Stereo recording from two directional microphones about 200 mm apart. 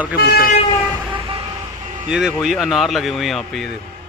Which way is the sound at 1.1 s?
25° right (ahead or behind).